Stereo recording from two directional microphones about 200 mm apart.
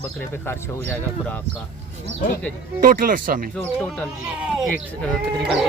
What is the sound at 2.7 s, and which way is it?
Speech, 45° right (ahead or behind).